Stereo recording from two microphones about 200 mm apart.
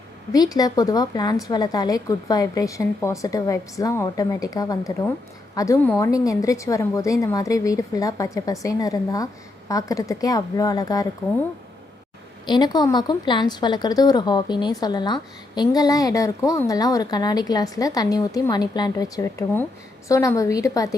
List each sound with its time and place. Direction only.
0.3 s a woman's voice: 20° left (ahead or behind)
12.5 s a woman's voice: 20° left (ahead or behind)